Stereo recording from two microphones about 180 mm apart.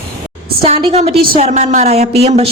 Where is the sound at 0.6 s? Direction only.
35° right (ahead or behind).